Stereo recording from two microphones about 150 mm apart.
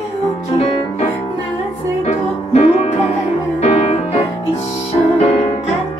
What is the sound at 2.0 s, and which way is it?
Music, 45° left (ahead or behind).